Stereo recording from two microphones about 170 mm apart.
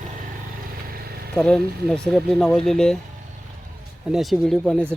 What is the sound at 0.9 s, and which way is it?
Vehicle, 60° right (ahead or behind).